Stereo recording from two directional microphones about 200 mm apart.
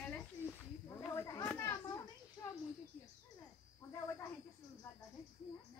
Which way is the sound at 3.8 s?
15° left (ahead or behind).